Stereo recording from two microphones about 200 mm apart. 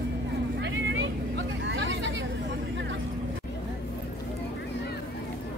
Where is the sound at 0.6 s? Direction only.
65° right (ahead or behind).